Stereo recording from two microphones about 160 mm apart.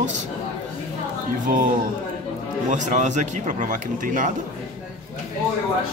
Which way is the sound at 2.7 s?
50° right (ahead or behind).